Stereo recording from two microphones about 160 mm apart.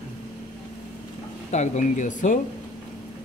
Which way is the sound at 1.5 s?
45° left (ahead or behind).